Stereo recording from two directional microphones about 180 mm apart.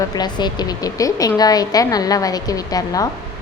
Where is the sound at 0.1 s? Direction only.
25° left (ahead or behind).